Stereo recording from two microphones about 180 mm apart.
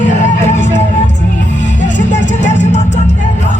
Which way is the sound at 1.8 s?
40° left (ahead or behind).